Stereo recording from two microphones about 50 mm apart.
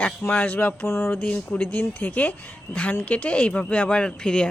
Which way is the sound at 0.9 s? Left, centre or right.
Left.